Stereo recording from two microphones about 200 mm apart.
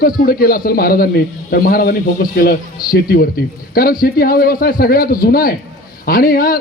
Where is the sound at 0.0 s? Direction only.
45° left (ahead or behind).